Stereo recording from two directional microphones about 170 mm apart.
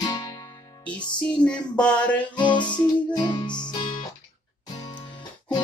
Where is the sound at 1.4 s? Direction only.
5° left (ahead or behind).